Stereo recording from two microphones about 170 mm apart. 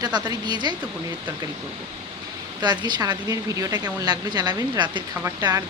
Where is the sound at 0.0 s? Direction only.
25° right (ahead or behind).